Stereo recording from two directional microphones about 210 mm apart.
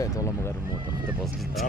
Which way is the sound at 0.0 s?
15° left (ahead or behind).